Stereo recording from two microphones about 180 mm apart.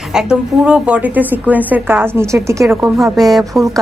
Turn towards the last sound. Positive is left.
turn(degrees=0)  # may be behind; listen again after turning